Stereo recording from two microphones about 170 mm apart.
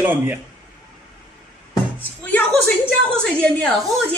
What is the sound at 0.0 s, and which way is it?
Speech, 10° right (ahead or behind).